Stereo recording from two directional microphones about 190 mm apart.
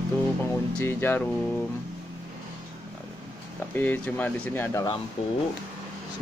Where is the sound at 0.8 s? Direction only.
10° left (ahead or behind).